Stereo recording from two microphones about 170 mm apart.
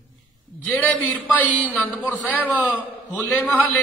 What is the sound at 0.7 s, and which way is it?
Speech, 10° left (ahead or behind).